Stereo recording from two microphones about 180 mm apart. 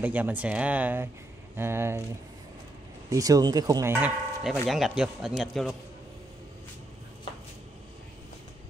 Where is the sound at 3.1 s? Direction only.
20° right (ahead or behind).